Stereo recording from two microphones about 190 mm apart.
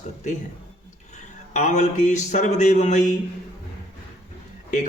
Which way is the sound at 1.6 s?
40° left (ahead or behind).